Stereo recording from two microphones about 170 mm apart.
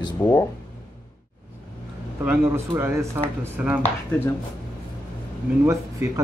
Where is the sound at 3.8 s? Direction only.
10° left (ahead or behind).